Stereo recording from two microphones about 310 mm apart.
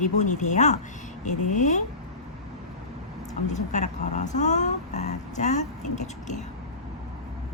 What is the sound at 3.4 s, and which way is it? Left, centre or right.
Speech, left.